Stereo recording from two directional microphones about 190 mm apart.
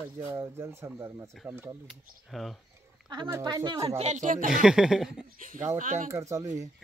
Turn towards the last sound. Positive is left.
turn(degrees=-15)  # may be behind; listen again after turning